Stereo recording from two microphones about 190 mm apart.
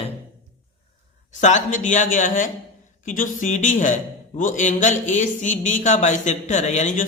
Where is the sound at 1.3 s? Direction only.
40° left (ahead or behind).